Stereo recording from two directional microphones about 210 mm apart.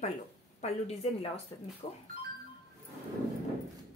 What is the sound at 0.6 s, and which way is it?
Speech, 30° left (ahead or behind).